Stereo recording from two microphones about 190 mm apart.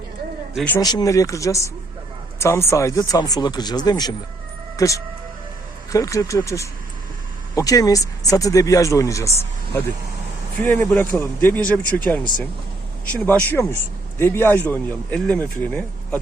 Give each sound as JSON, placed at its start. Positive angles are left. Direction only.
{"t": 0.5, "sound": "speech", "side_deg": 5}
{"t": 0.8, "sound": "speech", "side_deg": 20}
{"t": 10.6, "sound": "speech", "side_deg": 10}